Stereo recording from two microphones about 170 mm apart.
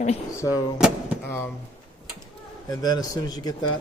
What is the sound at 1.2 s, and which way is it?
Speech, 15° left (ahead or behind).